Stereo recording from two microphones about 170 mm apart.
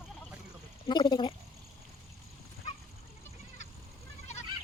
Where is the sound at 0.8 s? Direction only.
25° left (ahead or behind).